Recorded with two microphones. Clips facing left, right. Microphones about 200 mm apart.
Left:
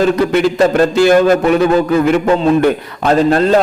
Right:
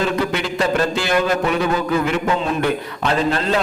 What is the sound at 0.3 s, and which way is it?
A man's voice, 45° left (ahead or behind).